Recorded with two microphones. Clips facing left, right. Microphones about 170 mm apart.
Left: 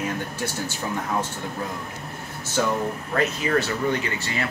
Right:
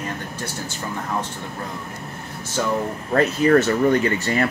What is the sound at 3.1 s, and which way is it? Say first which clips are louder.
Speech: right 7 dB; 45° right (ahead or behind).